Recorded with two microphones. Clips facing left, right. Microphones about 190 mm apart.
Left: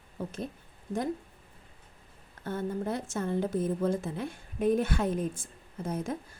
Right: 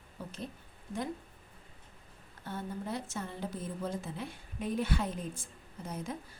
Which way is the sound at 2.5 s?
50° left (ahead or behind).